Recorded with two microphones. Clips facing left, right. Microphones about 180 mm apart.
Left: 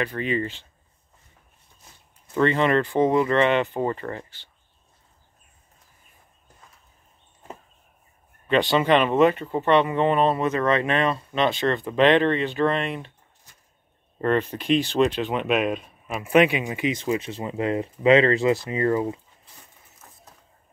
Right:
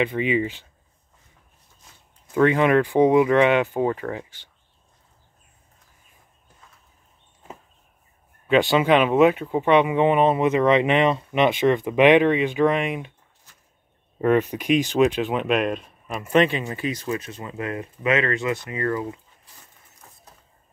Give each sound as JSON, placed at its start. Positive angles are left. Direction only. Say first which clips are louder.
{"t": 0.0, "sound": "speech", "louder": "right 4 dB", "side_deg": -15}
{"t": 2.3, "sound": "speech", "louder": "right 3 dB", "side_deg": -10}
{"t": 8.5, "sound": "speech", "louder": "right 2 dB", "side_deg": -10}
{"t": 14.2, "sound": "speech", "louder": "right 3 dB", "side_deg": -10}
{"t": 15.4, "sound": "speech", "louder": "right 1 dB", "side_deg": 5}